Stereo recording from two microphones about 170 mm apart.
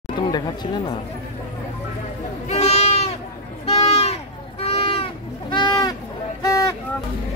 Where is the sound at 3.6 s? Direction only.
35° left (ahead or behind).